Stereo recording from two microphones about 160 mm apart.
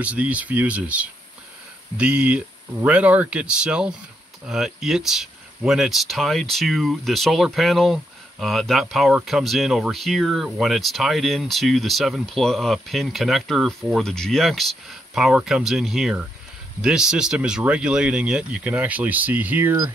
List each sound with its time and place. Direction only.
0.0 s speech: 10° right (ahead or behind)